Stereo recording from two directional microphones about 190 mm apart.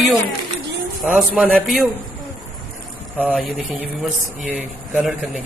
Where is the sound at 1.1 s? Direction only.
5° right (ahead or behind).